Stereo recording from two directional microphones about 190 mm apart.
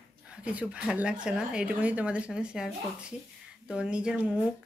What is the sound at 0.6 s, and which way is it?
Speech, 5° right (ahead or behind).